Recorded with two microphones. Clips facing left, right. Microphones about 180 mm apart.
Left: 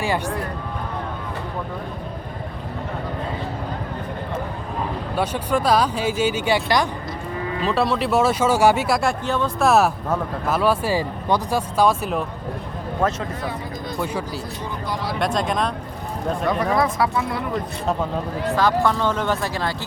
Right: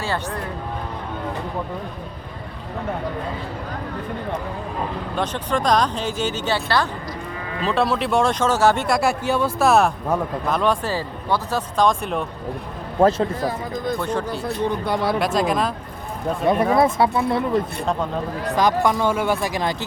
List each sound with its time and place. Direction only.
0.0 s speech: 15° left (ahead or behind)
5.1 s speech: 10° left (ahead or behind)
7.6 s speech: centre (ahead or behind)
13.0 s speech: 30° right (ahead or behind)
14.0 s speech: 10° left (ahead or behind)
14.3 s speech: 60° right (ahead or behind)
15.2 s speech: centre (ahead or behind)
16.7 s speech: 25° right (ahead or behind)
18.5 s speech: 15° right (ahead or behind)